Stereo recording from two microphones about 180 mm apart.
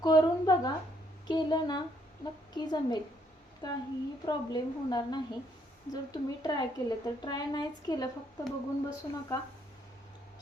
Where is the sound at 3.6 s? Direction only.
20° left (ahead or behind).